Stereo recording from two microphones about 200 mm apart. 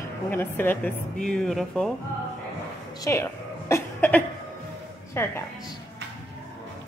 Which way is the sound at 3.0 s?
15° left (ahead or behind).